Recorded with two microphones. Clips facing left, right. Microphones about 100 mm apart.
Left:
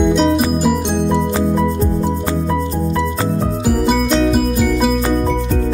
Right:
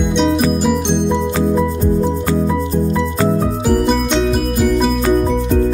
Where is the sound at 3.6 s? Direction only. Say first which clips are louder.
Even; 5° left (ahead or behind).